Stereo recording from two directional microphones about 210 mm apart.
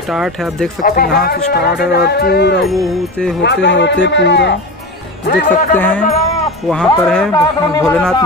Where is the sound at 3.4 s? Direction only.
55° left (ahead or behind).